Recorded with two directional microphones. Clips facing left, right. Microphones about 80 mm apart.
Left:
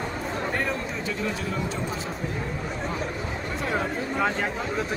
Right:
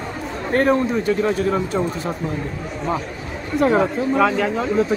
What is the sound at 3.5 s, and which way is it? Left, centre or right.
Speech, right.